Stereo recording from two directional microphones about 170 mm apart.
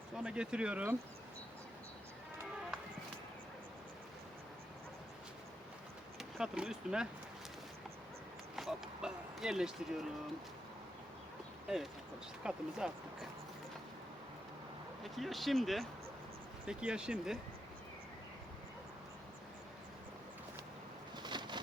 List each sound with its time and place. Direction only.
0.2 s speech: 5° right (ahead or behind)
6.1 s speech: 5° right (ahead or behind)
8.5 s speech: 5° right (ahead or behind)
12.4 s speech: 5° right (ahead or behind)
15.0 s speech: centre (ahead or behind)
21.2 s a sound: 25° right (ahead or behind)